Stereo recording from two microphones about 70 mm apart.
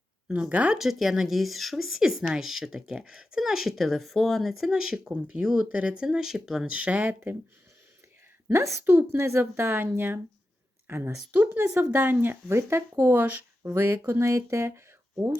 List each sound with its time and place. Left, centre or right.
0.3 s speech: centre
0.8 s speech: centre
6.7 s speech: centre
8.4 s a woman's voice: right
8.8 s a woman's voice: right
11.3 s a woman's voice: right
13.6 s a woman's voice: right